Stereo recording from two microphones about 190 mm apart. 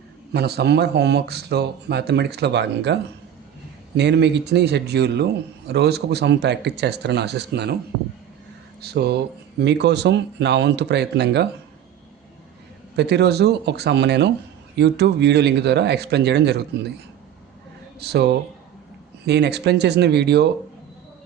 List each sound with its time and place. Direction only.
0.3 s a man's voice: 60° right (ahead or behind)
8.8 s a man's voice: 60° right (ahead or behind)
13.0 s a man's voice: 60° right (ahead or behind)
18.0 s a man's voice: 60° right (ahead or behind)